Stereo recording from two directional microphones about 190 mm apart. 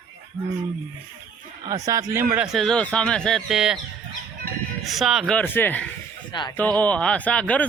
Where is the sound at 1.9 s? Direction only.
15° right (ahead or behind).